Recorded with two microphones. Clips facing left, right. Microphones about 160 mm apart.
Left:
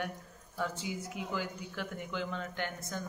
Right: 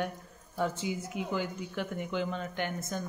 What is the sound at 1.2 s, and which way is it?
Speech, 20° right (ahead or behind).